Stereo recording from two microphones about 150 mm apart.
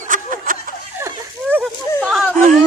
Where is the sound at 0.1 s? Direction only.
60° right (ahead or behind).